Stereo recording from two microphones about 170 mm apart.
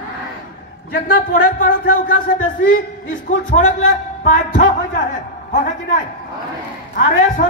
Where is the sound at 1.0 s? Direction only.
55° left (ahead or behind).